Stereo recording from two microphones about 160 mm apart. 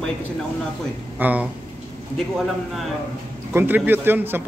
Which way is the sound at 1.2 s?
10° right (ahead or behind).